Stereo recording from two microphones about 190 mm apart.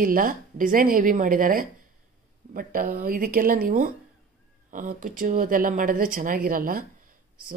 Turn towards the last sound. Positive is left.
turn(degrees=-45)  # may be behind; listen again after turning